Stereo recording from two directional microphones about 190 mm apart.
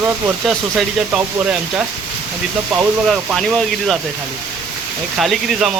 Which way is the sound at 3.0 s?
Centre (ahead or behind).